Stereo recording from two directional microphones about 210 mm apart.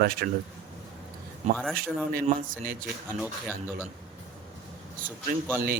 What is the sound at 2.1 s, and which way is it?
Speech, 40° right (ahead or behind).